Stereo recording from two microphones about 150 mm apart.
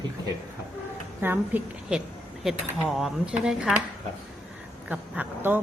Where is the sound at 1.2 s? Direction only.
10° right (ahead or behind).